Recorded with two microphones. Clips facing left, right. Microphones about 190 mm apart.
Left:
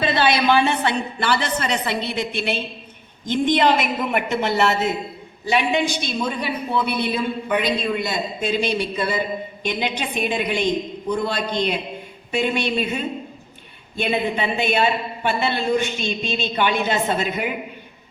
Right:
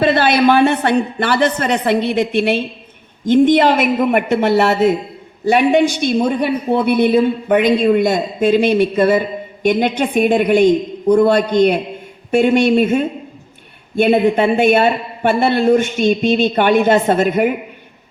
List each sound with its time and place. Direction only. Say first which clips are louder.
0.0 s a woman's voice: right 6 dB; 55° right (ahead or behind)